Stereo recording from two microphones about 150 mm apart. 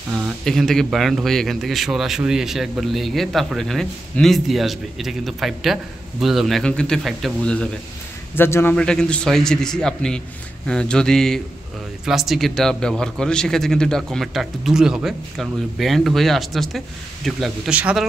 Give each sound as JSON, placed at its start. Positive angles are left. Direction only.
{"t": 0.1, "sound": "a man's voice", "side_deg": 0}